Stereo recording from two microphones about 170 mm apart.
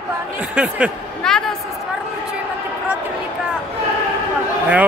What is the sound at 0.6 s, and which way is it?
Speech, 10° right (ahead or behind).